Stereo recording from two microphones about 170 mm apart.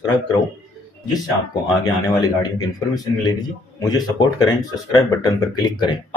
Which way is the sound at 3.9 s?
25° left (ahead or behind).